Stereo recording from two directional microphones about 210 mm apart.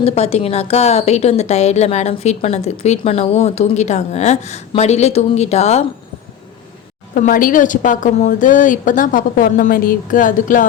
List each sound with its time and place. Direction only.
0.0 s a woman's voice: 30° left (ahead or behind)
7.1 s a woman's voice: 40° left (ahead or behind)